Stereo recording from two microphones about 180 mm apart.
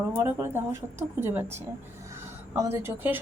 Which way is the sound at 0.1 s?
10° right (ahead or behind).